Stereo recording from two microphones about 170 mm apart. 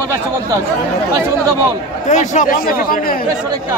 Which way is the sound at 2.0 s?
45° left (ahead or behind).